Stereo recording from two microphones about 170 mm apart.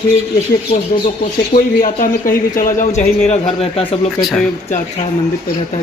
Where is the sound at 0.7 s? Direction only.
35° left (ahead or behind).